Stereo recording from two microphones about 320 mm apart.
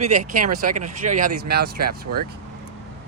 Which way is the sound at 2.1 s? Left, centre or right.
Right.